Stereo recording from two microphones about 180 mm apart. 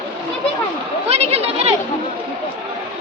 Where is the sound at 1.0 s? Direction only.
35° right (ahead or behind).